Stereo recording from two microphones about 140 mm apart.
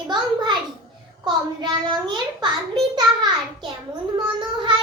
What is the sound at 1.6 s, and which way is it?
Speech, 30° right (ahead or behind).